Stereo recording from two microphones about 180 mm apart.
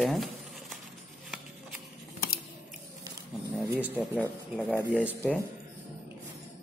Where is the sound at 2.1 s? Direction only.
55° left (ahead or behind).